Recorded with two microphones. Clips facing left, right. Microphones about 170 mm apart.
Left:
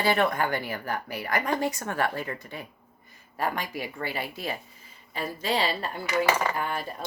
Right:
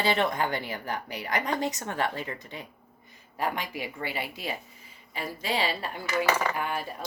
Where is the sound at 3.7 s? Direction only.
15° right (ahead or behind).